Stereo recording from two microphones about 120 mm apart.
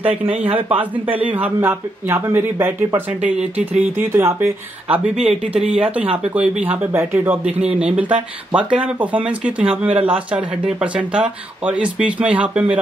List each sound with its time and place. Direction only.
0.5 s speech: 50° right (ahead or behind)
0.9 s speech: 15° right (ahead or behind)